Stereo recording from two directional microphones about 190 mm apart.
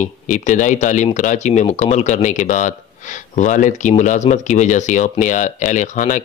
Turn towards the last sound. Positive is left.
turn(degrees=40)  # may be behind; listen again after turning